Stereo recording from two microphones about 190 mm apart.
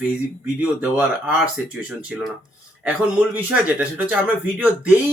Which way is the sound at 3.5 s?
5° right (ahead or behind).